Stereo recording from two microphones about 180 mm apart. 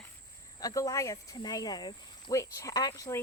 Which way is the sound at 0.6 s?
20° left (ahead or behind).